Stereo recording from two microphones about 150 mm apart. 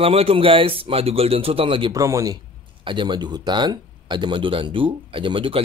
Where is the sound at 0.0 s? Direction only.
40° right (ahead or behind).